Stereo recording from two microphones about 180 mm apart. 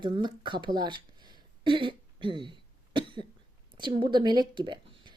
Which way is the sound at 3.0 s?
25° right (ahead or behind).